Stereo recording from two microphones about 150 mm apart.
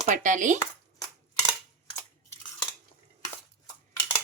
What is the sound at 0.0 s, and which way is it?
Speech, 55° right (ahead or behind).